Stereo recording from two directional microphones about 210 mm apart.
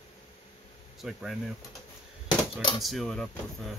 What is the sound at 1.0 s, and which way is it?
Speech, centre (ahead or behind).